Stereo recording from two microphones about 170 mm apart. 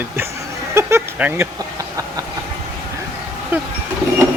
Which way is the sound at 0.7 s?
10° right (ahead or behind).